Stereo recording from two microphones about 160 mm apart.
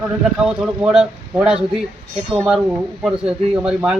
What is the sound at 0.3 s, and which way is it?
Speech, 5° right (ahead or behind).